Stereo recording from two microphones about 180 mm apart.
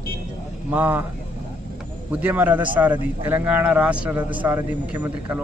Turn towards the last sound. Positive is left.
turn(degrees=-10)  # may be behind; listen again after turning